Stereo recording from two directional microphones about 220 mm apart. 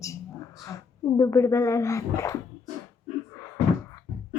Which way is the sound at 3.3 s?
15° left (ahead or behind).